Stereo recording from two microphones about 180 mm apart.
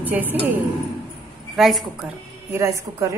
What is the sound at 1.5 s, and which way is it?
Speech, centre (ahead or behind).